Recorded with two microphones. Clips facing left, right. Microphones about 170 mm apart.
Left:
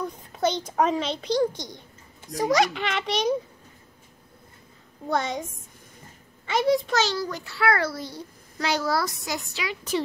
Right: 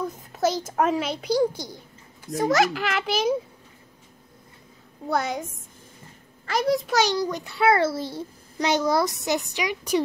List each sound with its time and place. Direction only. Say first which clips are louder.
0.0 s a child's voice: right 1 dB; 5° right (ahead or behind)
5.0 s a child's voice: right 1 dB; 5° right (ahead or behind)
7.0 s a child's voice: right 3 dB; 20° right (ahead or behind)